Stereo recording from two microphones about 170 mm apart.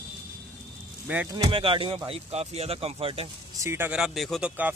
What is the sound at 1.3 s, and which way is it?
Speech, 20° right (ahead or behind).